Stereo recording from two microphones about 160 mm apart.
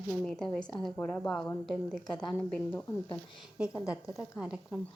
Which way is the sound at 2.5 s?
10° left (ahead or behind).